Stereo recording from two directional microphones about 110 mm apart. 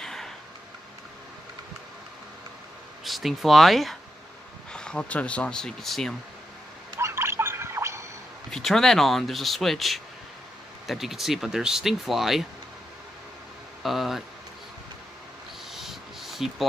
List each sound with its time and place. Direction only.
0.0 s a sound: 5° left (ahead or behind)
3.0 s speech: centre (ahead or behind)
7.0 s turkey: 25° right (ahead or behind)
8.5 s speech: 5° left (ahead or behind)
13.8 s speech: centre (ahead or behind)
15.7 s a sound: centre (ahead or behind)